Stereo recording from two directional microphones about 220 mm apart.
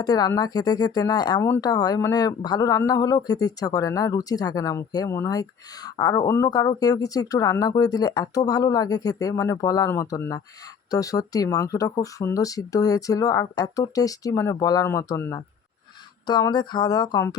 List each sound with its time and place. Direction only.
0.0 s speech: 15° left (ahead or behind)